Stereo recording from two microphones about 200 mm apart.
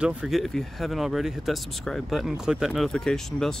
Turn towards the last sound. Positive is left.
turn(degrees=0)  # may be behind; listen again after turning